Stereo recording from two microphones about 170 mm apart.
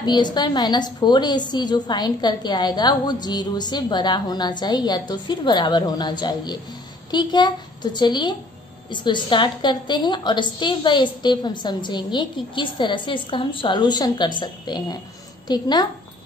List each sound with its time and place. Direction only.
0.0 s a woman's voice: 25° left (ahead or behind)